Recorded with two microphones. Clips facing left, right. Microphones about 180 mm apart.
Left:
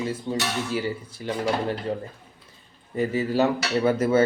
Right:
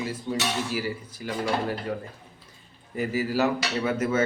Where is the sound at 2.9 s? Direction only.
25° left (ahead or behind).